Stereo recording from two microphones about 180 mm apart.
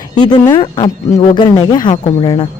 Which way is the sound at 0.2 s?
25° left (ahead or behind).